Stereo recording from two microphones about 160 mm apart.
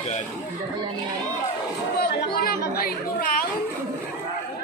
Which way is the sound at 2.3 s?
75° left (ahead or behind).